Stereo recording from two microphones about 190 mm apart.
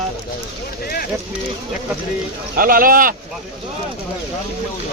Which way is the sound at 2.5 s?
50° right (ahead or behind).